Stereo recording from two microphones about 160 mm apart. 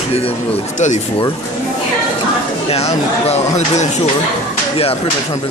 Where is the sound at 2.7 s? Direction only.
40° left (ahead or behind).